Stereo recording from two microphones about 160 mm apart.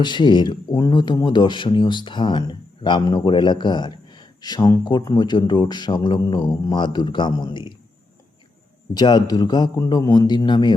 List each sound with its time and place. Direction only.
0.0 s speech: 30° left (ahead or behind)
9.0 s speech: 25° left (ahead or behind)